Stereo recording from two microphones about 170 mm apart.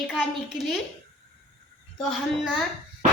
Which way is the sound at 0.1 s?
5° right (ahead or behind).